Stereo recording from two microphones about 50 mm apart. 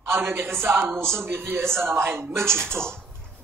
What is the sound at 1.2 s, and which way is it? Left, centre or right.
A woman's voice, right.